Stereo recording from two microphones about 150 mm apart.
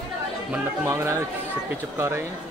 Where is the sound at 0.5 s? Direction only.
15° right (ahead or behind).